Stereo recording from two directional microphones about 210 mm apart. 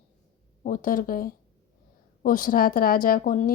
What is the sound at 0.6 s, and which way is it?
A woman's voice, 40° left (ahead or behind).